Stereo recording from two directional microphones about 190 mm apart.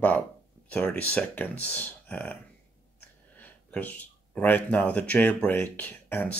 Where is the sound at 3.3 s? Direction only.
10° left (ahead or behind).